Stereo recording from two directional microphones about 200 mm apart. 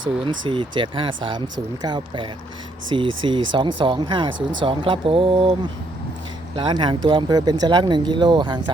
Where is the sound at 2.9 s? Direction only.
25° right (ahead or behind).